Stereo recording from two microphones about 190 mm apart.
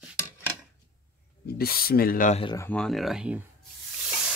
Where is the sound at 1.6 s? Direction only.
55° left (ahead or behind).